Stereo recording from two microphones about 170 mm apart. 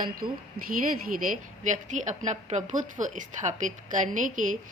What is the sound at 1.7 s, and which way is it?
A woman's voice, 45° right (ahead or behind).